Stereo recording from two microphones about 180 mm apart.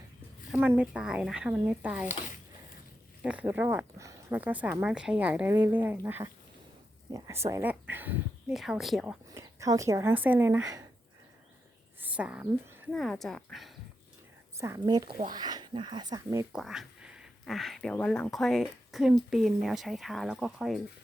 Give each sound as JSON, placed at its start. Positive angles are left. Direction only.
{"t": 0.5, "sound": "speech", "side_deg": -10}
{"t": 3.2, "sound": "speech", "side_deg": -10}
{"t": 9.3, "sound": "speech", "side_deg": -20}
{"t": 11.9, "sound": "speech", "side_deg": -10}
{"t": 12.9, "sound": "speech", "side_deg": 0}
{"t": 14.6, "sound": "speech", "side_deg": -20}
{"t": 16.5, "sound": "speech", "side_deg": 0}